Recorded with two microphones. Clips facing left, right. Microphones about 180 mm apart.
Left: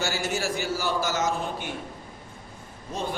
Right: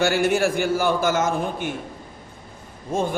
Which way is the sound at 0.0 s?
60° right (ahead or behind).